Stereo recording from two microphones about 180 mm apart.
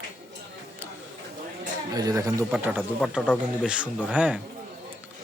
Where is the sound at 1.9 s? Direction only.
20° right (ahead or behind).